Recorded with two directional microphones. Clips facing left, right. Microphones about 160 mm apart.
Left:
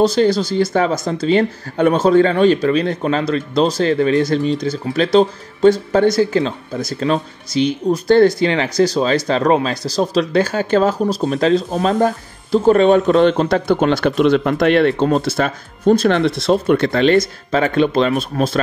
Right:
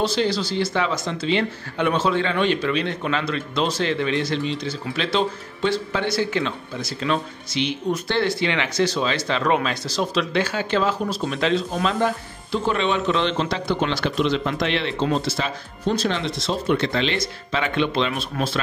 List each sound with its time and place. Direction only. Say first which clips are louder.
0.0 s speech: left 8 dB; 45° left (ahead or behind)